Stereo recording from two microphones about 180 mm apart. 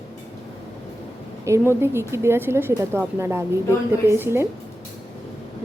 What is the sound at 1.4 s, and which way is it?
A woman's voice, 15° right (ahead or behind).